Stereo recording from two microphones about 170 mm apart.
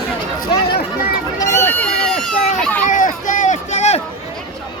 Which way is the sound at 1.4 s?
15° left (ahead or behind).